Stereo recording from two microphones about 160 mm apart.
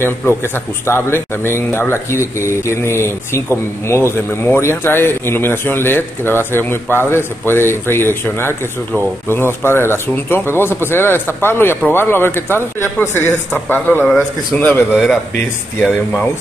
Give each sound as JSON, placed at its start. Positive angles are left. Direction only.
{"t": 0.8, "sound": "a man's voice", "side_deg": 15}